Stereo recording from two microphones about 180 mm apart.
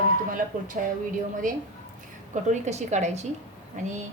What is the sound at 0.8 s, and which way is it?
A woman's voice, 50° right (ahead or behind).